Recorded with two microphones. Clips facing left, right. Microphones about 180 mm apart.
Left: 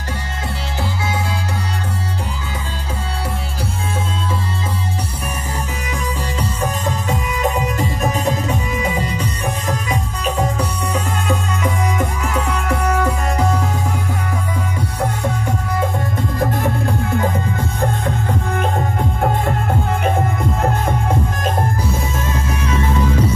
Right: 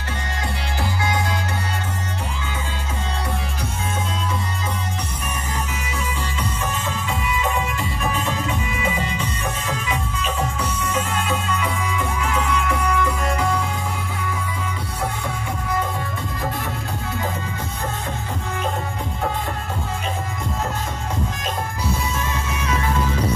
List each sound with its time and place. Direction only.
6.6 s music: 40° left (ahead or behind)
16.6 s music: 55° left (ahead or behind)
19.4 s music: 55° left (ahead or behind)